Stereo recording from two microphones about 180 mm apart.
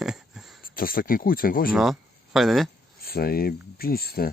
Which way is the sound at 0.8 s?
55° left (ahead or behind).